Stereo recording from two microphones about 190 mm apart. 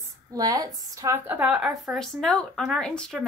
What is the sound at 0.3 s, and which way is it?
A child's voice, 20° right (ahead or behind).